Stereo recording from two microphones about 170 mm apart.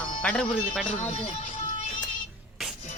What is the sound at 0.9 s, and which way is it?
Speech, 40° left (ahead or behind).